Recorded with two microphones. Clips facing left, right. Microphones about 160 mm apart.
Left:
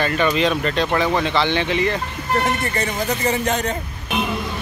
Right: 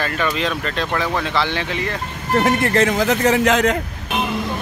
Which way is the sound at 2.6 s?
90° right.